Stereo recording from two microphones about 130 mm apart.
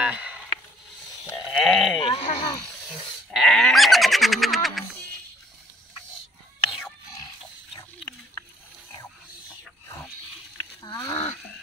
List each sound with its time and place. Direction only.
0.0 s a sound: 10° right (ahead or behind)
1.5 s sheep: centre (ahead or behind)
2.0 s sheep: 40° left (ahead or behind)
3.3 s goat: 5° left (ahead or behind)
10.8 s wild animals: 25° left (ahead or behind)